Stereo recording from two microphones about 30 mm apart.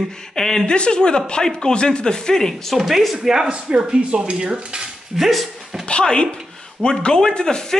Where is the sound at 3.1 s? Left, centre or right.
Centre.